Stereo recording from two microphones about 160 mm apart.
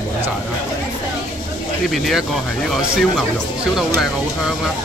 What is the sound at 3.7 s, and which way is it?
Speech, centre (ahead or behind).